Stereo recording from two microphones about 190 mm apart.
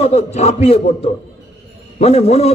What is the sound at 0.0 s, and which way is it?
A man's voice, 35° left (ahead or behind).